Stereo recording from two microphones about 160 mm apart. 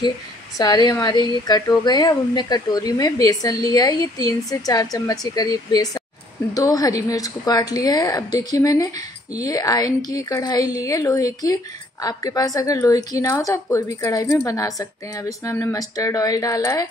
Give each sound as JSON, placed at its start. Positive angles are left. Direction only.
{"t": 0.6, "sound": "a woman's voice", "side_deg": 25}